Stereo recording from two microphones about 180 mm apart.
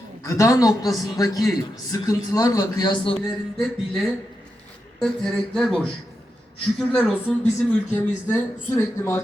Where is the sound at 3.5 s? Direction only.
Centre (ahead or behind).